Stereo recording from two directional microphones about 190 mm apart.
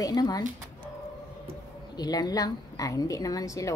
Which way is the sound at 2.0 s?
20° left (ahead or behind).